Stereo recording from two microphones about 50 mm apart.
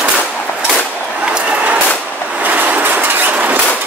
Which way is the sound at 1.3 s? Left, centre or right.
Right.